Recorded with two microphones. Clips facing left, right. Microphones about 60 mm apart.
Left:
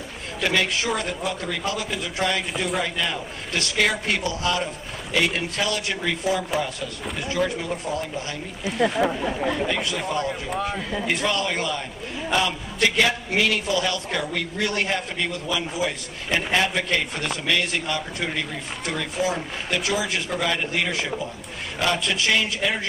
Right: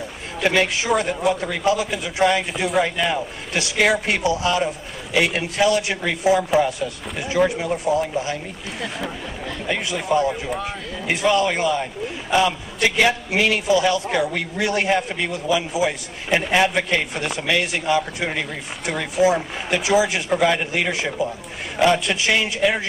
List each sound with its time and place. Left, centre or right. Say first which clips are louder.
0.4 s a man's voice: right 4 dB; centre
2.8 s a man's voice: right 5 dB; centre
8.6 s a man's voice: left 9 dB; centre
9.2 s speech: left 6 dB; centre
9.7 s a man's voice: right 4 dB; centre